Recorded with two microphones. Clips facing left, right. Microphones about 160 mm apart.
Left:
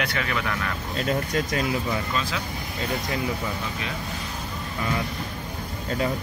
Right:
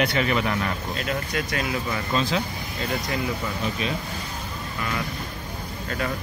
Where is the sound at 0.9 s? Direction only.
35° left (ahead or behind).